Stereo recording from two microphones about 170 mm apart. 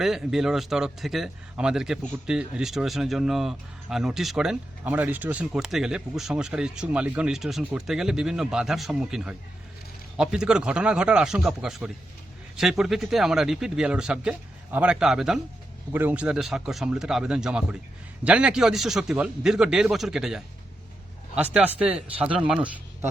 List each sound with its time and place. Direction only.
0.0 s speech: 5° right (ahead or behind)